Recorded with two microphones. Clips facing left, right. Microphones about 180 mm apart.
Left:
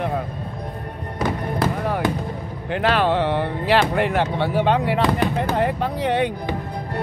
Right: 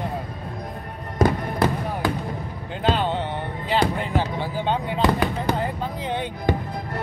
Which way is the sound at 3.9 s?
70° left (ahead or behind).